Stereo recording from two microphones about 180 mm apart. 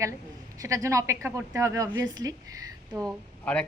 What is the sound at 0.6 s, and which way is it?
Speech, 15° right (ahead or behind).